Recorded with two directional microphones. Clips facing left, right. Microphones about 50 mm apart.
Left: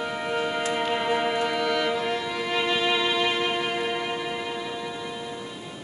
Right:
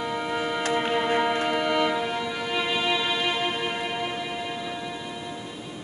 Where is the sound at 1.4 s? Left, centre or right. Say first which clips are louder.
Right 1 dB; centre.